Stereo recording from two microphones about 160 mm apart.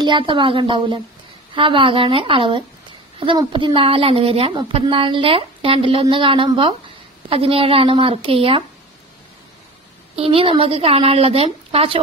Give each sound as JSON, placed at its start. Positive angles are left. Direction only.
{"t": 0.0, "sound": "a woman's voice", "side_deg": -30}
{"t": 10.1, "sound": "a woman's voice", "side_deg": -35}